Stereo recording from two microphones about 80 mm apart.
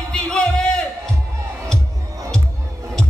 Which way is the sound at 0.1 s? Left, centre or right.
Centre.